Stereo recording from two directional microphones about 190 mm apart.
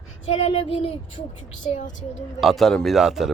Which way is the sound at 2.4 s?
Centre (ahead or behind).